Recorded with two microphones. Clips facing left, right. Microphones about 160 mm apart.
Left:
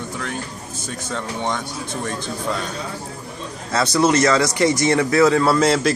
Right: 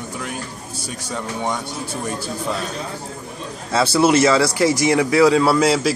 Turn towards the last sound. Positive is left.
turn(degrees=-5)  # may be behind; listen again after turning